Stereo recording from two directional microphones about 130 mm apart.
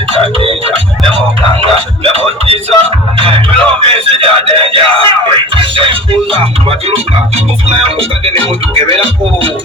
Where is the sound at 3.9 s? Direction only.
45° right (ahead or behind).